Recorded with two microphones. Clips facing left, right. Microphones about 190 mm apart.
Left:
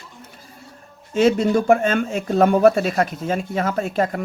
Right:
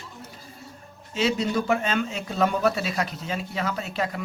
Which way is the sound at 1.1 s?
50° left (ahead or behind).